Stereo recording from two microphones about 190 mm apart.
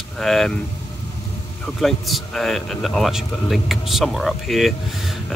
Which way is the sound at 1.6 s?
Centre (ahead or behind).